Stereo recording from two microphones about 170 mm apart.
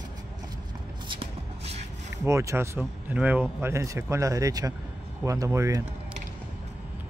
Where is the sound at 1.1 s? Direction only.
35° right (ahead or behind).